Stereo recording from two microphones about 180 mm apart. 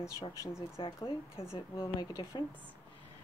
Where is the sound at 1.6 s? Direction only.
25° left (ahead or behind).